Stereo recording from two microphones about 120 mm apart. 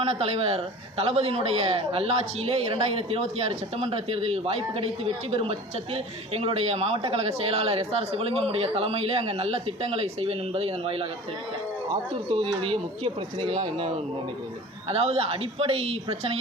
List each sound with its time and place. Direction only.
0.0 s speech: 55° right (ahead or behind)
12.1 s speech: 45° right (ahead or behind)